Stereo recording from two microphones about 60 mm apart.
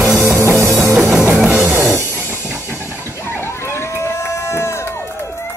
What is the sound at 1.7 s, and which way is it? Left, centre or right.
Music, right.